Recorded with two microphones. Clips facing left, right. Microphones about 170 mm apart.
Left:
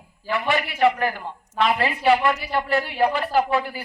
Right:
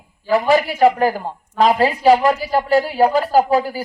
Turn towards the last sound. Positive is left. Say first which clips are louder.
# right 6 dB
turn(degrees=-35)  # may be behind; listen again after turning